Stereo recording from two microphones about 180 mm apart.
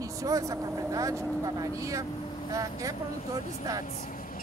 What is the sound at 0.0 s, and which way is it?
Speech, 20° right (ahead or behind).